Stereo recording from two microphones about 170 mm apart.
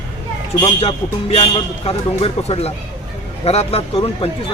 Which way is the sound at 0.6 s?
35° left (ahead or behind).